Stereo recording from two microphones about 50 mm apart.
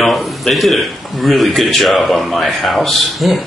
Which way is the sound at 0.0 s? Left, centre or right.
Centre.